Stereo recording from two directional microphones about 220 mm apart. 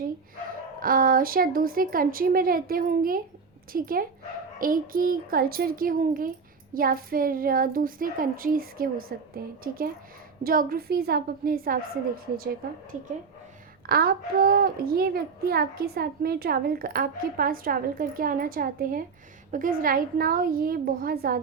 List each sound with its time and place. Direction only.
0.8 s a child's voice: 40° right (ahead or behind)